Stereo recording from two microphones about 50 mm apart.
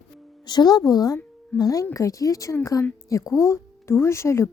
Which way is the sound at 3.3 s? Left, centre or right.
Left.